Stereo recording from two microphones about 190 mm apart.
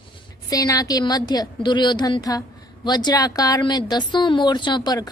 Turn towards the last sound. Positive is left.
turn(degrees=20)  # may be behind; listen again after turning